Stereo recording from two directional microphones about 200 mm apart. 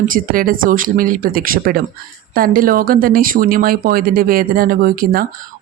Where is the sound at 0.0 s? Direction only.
45° right (ahead or behind).